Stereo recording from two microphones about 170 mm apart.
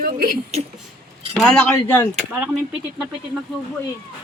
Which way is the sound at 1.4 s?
5° left (ahead or behind).